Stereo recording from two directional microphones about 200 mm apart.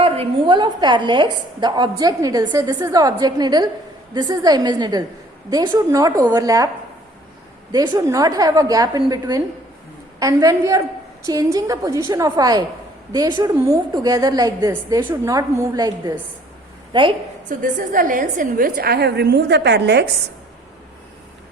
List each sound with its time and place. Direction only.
0.0 s a woman's voice: 25° right (ahead or behind)
7.7 s a woman's voice: 20° right (ahead or behind)
17.6 s a woman's voice: 45° right (ahead or behind)